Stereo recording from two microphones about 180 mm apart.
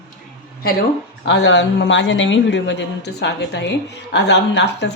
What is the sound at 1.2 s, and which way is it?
A woman's voice, 80° left.